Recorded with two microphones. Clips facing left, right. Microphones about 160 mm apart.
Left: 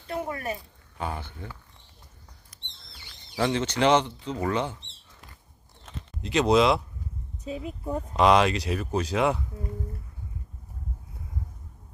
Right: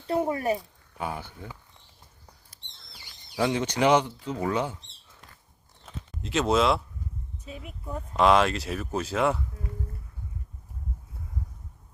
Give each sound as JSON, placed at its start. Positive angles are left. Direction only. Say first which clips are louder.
{"t": 0.1, "sound": "speech", "louder": "right 6 dB", "side_deg": -25}
{"t": 0.9, "sound": "speech", "louder": "even", "side_deg": -10}
{"t": 2.5, "sound": "rodents", "louder": "left 4 dB", "side_deg": -30}
{"t": 3.3, "sound": "speech", "louder": "even", "side_deg": -10}
{"t": 5.8, "sound": "a sound", "louder": "left 1 dB", "side_deg": 0}
{"t": 7.4, "sound": "speech", "louder": "left 8 dB", "side_deg": 30}
{"t": 8.1, "sound": "speech", "louder": "left 1 dB", "side_deg": 0}